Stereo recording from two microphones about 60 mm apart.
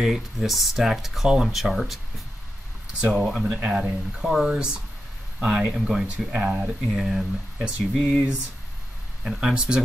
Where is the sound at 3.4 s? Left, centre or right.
Centre.